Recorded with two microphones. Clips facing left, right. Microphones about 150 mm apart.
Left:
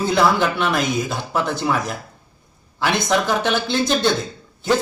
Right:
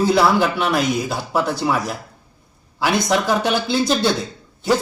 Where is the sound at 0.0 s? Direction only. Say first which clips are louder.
Right 2 dB; 5° right (ahead or behind).